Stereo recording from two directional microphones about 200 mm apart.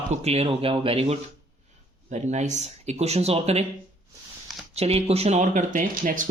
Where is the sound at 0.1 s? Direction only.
30° right (ahead or behind).